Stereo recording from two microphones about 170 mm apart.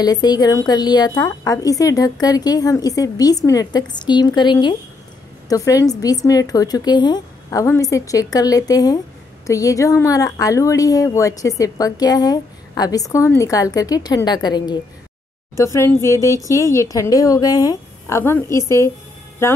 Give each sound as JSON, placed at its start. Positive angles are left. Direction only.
{"t": 0.0, "sound": "a woman's voice", "side_deg": 25}